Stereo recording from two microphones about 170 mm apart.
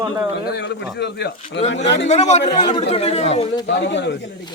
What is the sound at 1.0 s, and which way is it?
Speech, 90° left.